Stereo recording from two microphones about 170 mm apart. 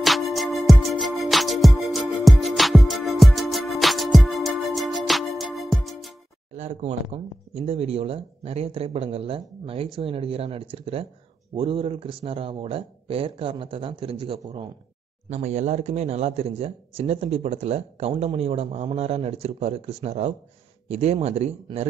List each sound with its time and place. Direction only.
0.0 s music: centre (ahead or behind)
6.5 s speech: 40° right (ahead or behind)
15.2 s speech: 40° right (ahead or behind)